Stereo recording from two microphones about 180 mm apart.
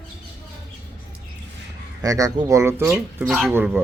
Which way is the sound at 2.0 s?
20° right (ahead or behind).